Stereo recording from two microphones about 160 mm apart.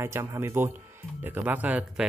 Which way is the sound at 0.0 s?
15° right (ahead or behind).